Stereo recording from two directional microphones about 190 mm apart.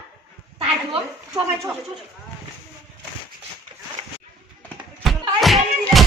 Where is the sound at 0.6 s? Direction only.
30° right (ahead or behind).